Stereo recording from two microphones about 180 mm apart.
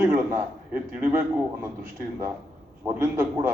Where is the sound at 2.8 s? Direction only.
15° right (ahead or behind).